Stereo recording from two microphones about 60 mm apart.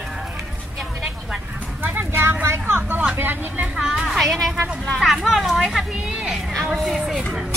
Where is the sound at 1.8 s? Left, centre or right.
Right.